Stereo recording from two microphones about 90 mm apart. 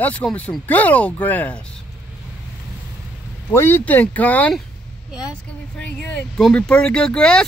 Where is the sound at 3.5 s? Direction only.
25° left (ahead or behind).